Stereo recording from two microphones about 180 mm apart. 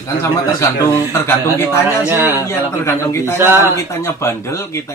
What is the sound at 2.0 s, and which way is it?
Speech, 10° right (ahead or behind).